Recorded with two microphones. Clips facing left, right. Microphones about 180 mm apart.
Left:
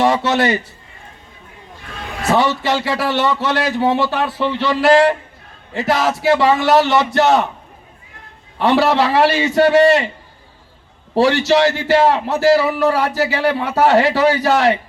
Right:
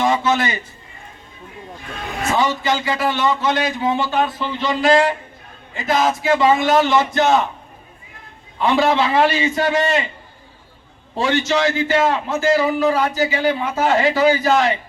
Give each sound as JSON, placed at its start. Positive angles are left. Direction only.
{"t": 0.0, "sound": "a man's voice", "side_deg": 70}
{"t": 2.2, "sound": "speech", "side_deg": 70}
{"t": 8.5, "sound": "speech", "side_deg": 70}
{"t": 11.1, "sound": "speech", "side_deg": 70}